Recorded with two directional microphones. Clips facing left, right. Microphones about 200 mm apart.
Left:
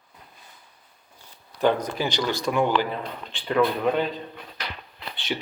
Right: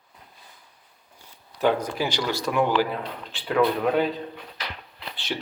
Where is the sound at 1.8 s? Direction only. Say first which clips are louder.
Even; 10° right (ahead or behind).